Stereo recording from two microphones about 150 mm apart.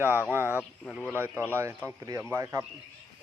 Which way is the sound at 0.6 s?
Centre (ahead or behind).